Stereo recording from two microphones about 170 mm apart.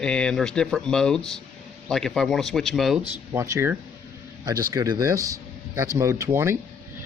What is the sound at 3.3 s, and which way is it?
Speech, 15° right (ahead or behind).